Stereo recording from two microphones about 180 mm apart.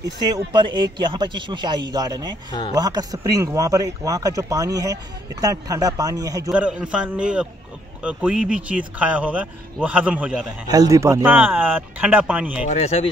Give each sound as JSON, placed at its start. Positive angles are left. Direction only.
{"t": 0.2, "sound": "speech", "side_deg": -25}
{"t": 6.5, "sound": "a man's voice", "side_deg": -5}
{"t": 10.7, "sound": "speech", "side_deg": -20}
{"t": 12.6, "sound": "speech", "side_deg": 40}